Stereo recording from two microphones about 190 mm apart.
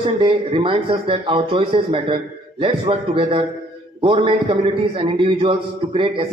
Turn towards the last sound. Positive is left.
turn(degrees=-30)  # may be behind; listen again after turning